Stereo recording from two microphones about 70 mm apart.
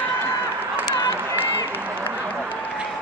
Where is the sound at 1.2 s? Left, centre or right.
Right.